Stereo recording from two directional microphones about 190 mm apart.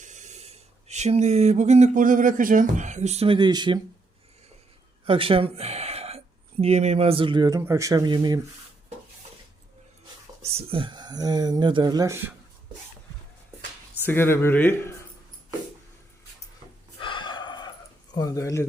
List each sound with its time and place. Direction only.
0.0 s speech: 40° right (ahead or behind); by 3.8 s 25° right (ahead or behind)
5.0 s speech: 30° right (ahead or behind)
10.4 s speech: 30° right (ahead or behind); by 12.3 s 15° right (ahead or behind)
14.1 s speech: 10° left (ahead or behind)
17.0 s gasp: 25° left (ahead or behind)
18.1 s speech: 20° left (ahead or behind)